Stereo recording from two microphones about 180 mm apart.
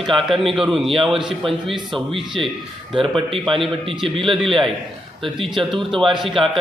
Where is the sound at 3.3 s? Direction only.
30° right (ahead or behind).